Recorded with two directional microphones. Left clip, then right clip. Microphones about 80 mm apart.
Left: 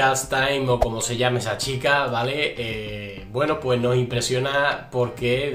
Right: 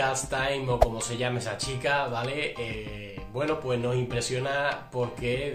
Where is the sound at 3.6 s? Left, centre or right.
Left.